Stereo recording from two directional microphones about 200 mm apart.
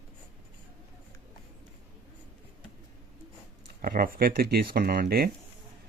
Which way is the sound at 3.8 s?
45° right (ahead or behind).